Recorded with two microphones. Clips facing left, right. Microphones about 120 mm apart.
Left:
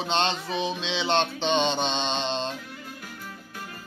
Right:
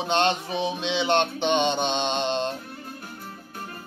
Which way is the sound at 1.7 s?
55° right (ahead or behind).